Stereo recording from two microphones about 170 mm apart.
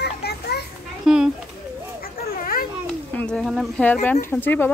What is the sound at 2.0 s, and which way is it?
Children playing, 60° left (ahead or behind).